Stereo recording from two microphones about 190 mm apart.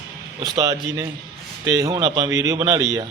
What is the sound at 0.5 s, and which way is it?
A man's voice, 15° right (ahead or behind).